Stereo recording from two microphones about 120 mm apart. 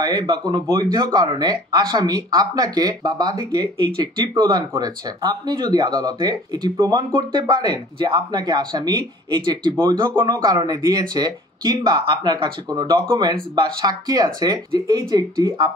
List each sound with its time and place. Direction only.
0.0 s speech: 35° right (ahead or behind)